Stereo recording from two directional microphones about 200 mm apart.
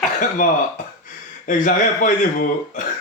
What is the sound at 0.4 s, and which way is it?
Speech, 40° left (ahead or behind).